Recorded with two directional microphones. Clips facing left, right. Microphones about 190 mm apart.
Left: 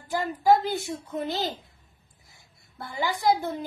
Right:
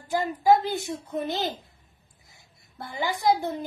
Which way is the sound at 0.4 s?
15° right (ahead or behind).